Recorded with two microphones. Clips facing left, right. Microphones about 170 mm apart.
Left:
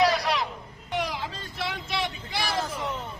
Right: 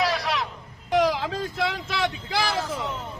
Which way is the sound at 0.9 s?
90° right.